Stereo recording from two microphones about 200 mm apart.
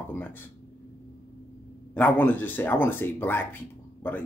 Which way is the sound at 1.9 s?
10° left (ahead or behind).